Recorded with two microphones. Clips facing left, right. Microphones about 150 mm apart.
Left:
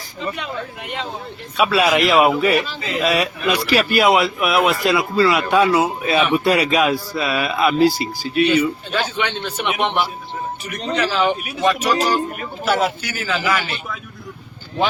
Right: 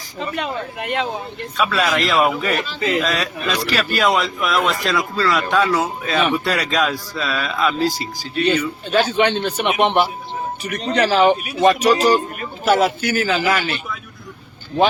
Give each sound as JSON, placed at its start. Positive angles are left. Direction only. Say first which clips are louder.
{"t": 0.3, "sound": "speech", "louder": "right 3 dB", "side_deg": -65}
{"t": 1.5, "sound": "a man's voice", "louder": "left 3 dB", "side_deg": 10}
{"t": 8.9, "sound": "a man's voice", "louder": "right 6 dB", "side_deg": -35}